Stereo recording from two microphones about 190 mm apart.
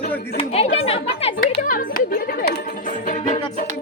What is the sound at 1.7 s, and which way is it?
Speech, 45° left (ahead or behind).